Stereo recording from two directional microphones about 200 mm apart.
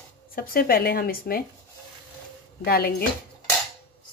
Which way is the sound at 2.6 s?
50° left (ahead or behind).